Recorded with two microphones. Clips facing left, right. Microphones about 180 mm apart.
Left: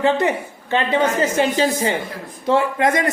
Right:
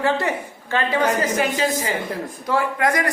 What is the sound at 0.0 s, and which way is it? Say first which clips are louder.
A woman's voice: left 4 dB; 20° left (ahead or behind).